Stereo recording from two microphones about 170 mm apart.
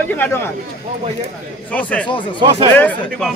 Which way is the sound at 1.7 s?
10° left (ahead or behind).